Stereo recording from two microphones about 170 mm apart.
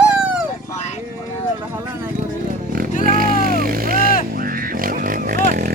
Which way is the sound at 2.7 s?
60° right (ahead or behind).